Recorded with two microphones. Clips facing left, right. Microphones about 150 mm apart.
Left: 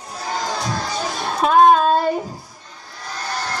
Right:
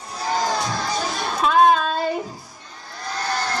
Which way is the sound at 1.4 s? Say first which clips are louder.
Left 4 dB; 50° left (ahead or behind).